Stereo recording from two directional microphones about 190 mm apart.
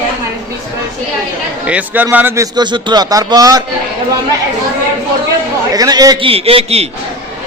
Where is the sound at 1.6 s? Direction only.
5° right (ahead or behind).